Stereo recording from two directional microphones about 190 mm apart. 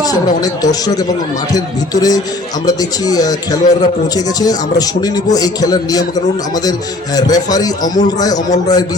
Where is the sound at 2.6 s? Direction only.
20° left (ahead or behind).